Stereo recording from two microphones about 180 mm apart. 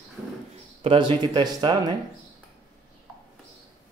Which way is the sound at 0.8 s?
30° right (ahead or behind).